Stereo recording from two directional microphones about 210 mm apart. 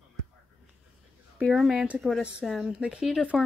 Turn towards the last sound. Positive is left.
turn(degrees=-5)  # may be behind; listen again after turning